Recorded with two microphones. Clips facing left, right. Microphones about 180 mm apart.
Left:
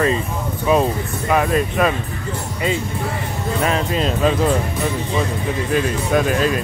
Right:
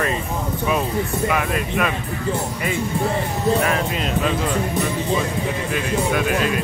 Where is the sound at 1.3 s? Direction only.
35° left (ahead or behind).